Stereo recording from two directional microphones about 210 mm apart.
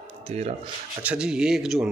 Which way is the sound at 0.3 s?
30° right (ahead or behind).